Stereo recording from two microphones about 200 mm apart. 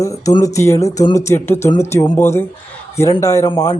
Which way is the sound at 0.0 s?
15° left (ahead or behind).